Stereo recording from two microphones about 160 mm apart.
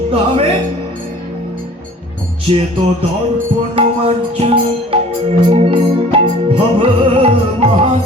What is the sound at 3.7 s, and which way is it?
Music, 35° right (ahead or behind).